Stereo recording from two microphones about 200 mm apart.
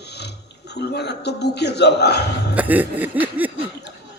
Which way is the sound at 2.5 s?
10° right (ahead or behind).